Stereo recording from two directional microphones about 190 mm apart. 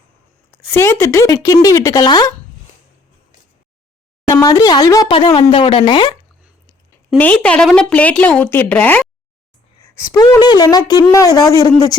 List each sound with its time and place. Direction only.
0.7 s a woman's voice: 15° left (ahead or behind)
4.3 s speech: 15° left (ahead or behind)
7.1 s a woman's voice: 5° left (ahead or behind)
9.9 s a woman's voice: 20° left (ahead or behind)